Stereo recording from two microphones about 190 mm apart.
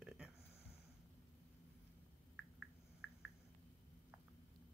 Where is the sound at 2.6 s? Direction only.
90° left.